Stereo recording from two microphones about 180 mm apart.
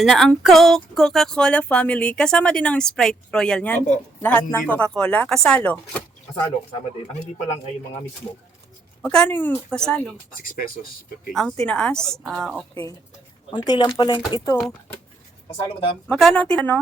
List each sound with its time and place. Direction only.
0.0 s speech: centre (ahead or behind)
9.0 s speech: 5° left (ahead or behind)
11.3 s speech: 5° left (ahead or behind)
13.5 s speech: 25° left (ahead or behind)
16.0 s speech: centre (ahead or behind)